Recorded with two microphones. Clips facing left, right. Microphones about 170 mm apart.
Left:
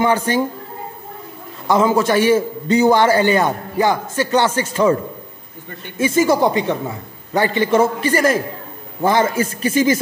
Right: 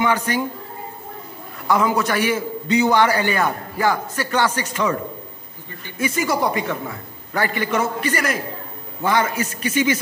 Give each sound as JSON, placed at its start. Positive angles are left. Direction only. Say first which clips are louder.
{"t": 0.0, "sound": "a man's voice", "louder": "left 4 dB", "side_deg": 30}
{"t": 1.7, "sound": "a man's voice", "louder": "left 4 dB", "side_deg": 25}
{"t": 5.9, "sound": "a man's voice", "louder": "left 6 dB", "side_deg": 25}